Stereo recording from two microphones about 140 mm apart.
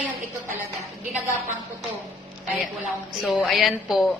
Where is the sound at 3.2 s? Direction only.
Centre (ahead or behind).